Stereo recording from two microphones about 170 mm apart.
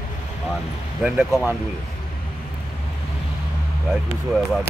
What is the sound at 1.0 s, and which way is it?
Speech, 5° right (ahead or behind).